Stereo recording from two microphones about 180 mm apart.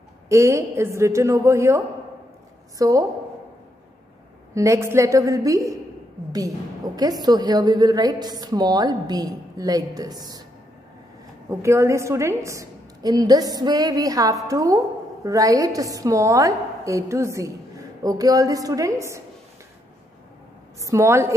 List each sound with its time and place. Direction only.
0.3 s a woman's voice: 15° right (ahead or behind)
2.8 s a woman's voice: 20° right (ahead or behind)
4.6 s a woman's voice: 15° right (ahead or behind)
7.0 s a woman's voice: 20° right (ahead or behind)
11.6 s a woman's voice: 15° right (ahead or behind)
20.8 s a woman's voice: 15° right (ahead or behind)